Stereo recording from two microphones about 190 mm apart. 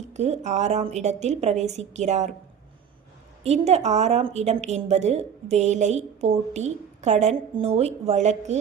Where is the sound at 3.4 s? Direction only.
35° right (ahead or behind).